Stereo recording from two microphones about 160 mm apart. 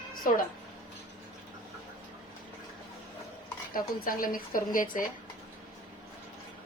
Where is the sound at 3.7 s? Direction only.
60° left (ahead or behind).